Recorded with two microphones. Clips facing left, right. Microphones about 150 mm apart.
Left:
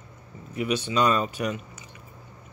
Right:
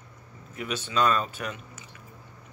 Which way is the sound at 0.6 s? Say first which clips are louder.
Left 3 dB; 10° left (ahead or behind).